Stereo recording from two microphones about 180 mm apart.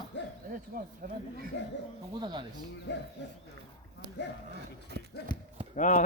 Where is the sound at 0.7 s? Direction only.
50° right (ahead or behind).